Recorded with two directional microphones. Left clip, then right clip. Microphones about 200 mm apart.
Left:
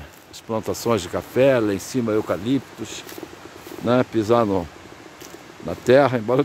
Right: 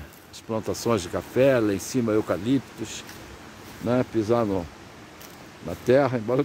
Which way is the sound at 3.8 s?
20° left (ahead or behind).